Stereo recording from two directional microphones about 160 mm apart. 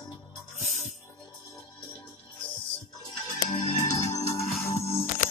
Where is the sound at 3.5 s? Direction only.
45° left (ahead or behind).